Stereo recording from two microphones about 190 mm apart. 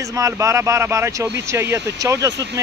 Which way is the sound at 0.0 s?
15° right (ahead or behind).